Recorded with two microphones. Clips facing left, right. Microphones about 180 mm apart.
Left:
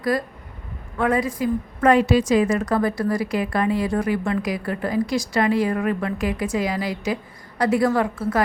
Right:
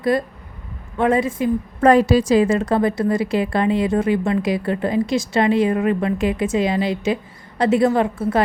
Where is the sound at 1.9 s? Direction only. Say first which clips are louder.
Right 3 dB; 35° right (ahead or behind).